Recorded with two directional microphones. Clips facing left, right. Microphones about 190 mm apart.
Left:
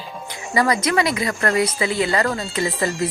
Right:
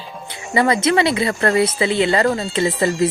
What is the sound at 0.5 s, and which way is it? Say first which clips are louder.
Speech: right 3 dB; 25° right (ahead or behind).